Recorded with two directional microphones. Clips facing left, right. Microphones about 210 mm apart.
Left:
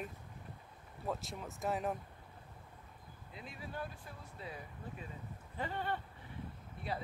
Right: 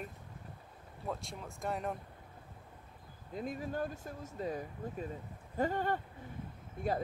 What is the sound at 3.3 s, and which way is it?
Speech, 45° right (ahead or behind).